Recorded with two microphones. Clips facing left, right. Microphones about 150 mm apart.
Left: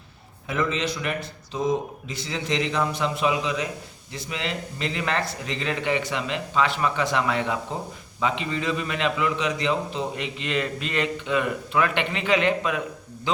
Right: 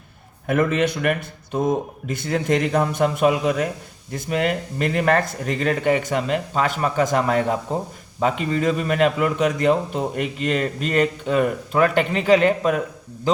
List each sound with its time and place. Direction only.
0.4 s a man's voice: 55° right (ahead or behind)